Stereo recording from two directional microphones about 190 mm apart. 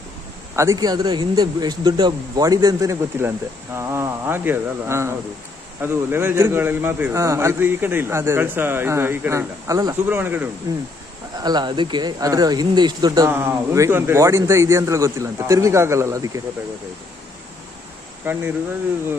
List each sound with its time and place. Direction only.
0.6 s a man's voice: 20° right (ahead or behind)
11.3 s speech: 20° right (ahead or behind)
18.2 s speech: 10° right (ahead or behind)